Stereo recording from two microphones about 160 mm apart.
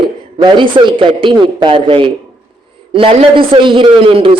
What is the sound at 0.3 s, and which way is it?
A man's voice, 30° right (ahead or behind).